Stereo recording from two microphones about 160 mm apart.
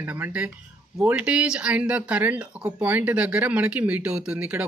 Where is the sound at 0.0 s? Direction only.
10° right (ahead or behind).